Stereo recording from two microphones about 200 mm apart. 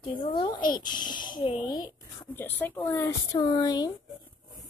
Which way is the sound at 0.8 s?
20° left (ahead or behind).